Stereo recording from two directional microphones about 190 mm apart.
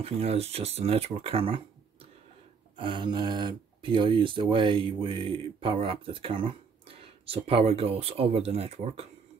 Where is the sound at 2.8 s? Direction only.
25° right (ahead or behind).